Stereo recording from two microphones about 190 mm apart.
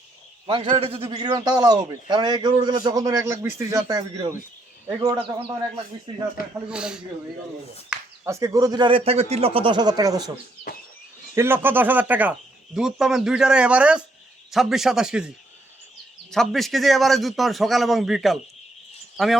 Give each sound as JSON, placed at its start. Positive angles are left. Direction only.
{"t": 0.4, "sound": "a man's voice", "side_deg": -25}
{"t": 6.7, "sound": "speech", "side_deg": -5}
{"t": 8.2, "sound": "a man's voice", "side_deg": -15}
{"t": 11.3, "sound": "speech", "side_deg": -10}
{"t": 16.3, "sound": "speech", "side_deg": 0}